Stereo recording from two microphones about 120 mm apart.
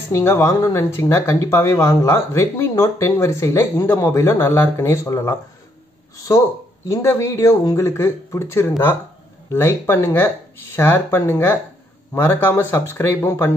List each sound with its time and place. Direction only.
0.1 s speech: 20° left (ahead or behind)
6.9 s speech: 25° left (ahead or behind)